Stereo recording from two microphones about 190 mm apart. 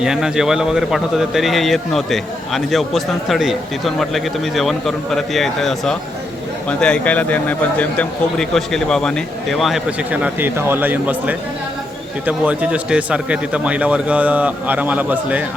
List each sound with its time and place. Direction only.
0.0 s a man's voice: 5° right (ahead or behind)